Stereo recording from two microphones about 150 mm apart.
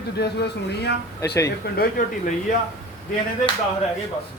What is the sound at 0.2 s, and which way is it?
Speech, 90° left.